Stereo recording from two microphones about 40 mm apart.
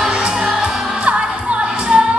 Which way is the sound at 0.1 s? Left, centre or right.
Right.